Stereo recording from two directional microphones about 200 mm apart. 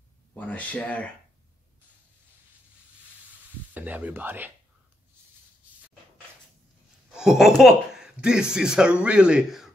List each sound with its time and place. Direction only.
0.3 s speech: 5° left (ahead or behind)
3.7 s speech: 10° right (ahead or behind)
7.1 s speech: 5° right (ahead or behind)